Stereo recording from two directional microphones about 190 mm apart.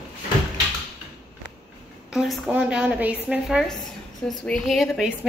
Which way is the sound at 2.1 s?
Centre (ahead or behind).